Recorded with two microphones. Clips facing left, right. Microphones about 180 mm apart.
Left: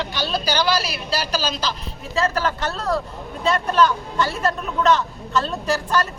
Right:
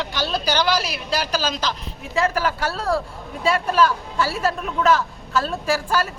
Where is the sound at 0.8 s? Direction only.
15° right (ahead or behind).